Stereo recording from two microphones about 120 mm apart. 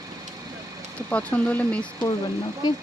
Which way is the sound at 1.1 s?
10° left (ahead or behind).